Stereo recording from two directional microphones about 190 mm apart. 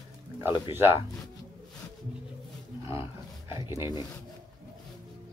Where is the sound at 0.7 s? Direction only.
10° right (ahead or behind).